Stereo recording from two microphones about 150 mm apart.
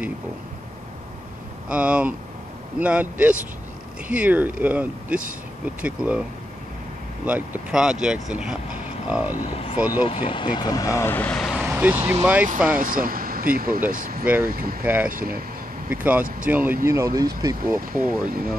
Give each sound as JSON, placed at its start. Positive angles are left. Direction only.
{"t": 1.7, "sound": "speech", "side_deg": -5}
{"t": 7.2, "sound": "speech", "side_deg": -10}
{"t": 9.4, "sound": "speech", "side_deg": 40}
{"t": 9.8, "sound": "speech", "side_deg": -10}
{"t": 10.0, "sound": "speech", "side_deg": 35}
{"t": 11.5, "sound": "vehicle", "side_deg": -10}
{"t": 12.5, "sound": "speech", "side_deg": -15}
{"t": 12.8, "sound": "speech", "side_deg": -70}
{"t": 14.2, "sound": "speech", "side_deg": -10}
{"t": 14.5, "sound": "speech", "side_deg": -70}
{"t": 14.8, "sound": "speech", "side_deg": -15}
{"t": 17.7, "sound": "speech", "side_deg": -65}
{"t": 18.3, "sound": "speech", "side_deg": -75}